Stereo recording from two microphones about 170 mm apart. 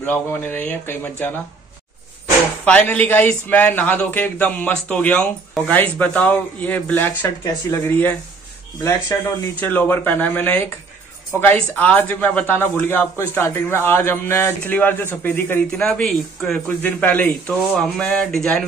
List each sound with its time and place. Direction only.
0.0 s a man's voice: 10° left (ahead or behind)
2.6 s a man's voice: 10° left (ahead or behind)
9.1 s a man's voice: 20° left (ahead or behind)